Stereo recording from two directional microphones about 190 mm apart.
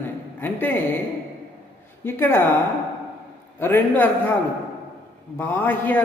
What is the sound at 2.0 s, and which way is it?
Mantra, 10° left (ahead or behind).